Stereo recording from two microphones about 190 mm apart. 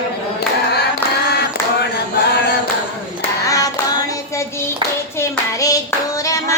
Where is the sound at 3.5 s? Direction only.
20° left (ahead or behind).